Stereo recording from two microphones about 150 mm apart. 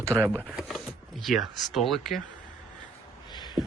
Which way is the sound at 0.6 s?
Centre (ahead or behind).